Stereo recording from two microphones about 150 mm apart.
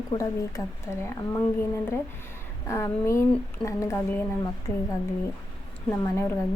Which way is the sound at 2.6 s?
20° left (ahead or behind).